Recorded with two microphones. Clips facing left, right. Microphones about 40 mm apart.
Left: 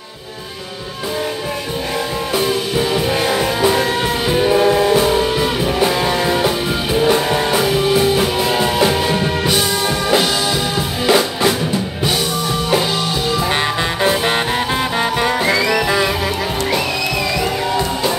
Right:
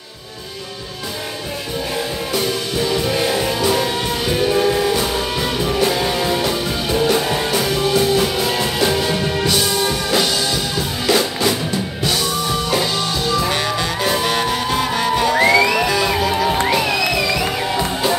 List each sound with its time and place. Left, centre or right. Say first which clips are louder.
2.3 s music: left 4 dB; centre
14.0 s music: left 3 dB; left